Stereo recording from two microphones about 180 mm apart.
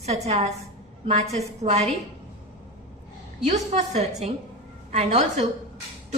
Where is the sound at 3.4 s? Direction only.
40° right (ahead or behind).